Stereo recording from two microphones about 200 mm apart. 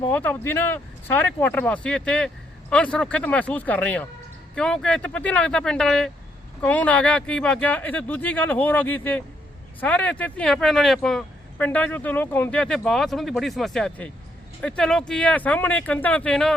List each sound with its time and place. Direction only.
0.0 s speech: 10° left (ahead or behind)